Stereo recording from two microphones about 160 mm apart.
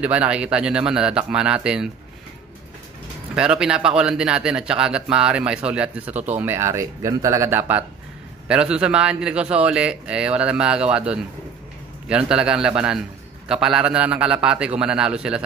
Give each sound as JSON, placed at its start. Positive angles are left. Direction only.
{"t": 0.0, "sound": "speech", "side_deg": -10}
{"t": 3.3, "sound": "a man's voice", "side_deg": -5}